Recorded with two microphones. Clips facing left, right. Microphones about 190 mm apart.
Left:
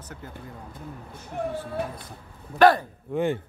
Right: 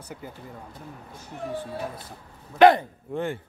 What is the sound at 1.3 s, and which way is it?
Speech, 55° left (ahead or behind).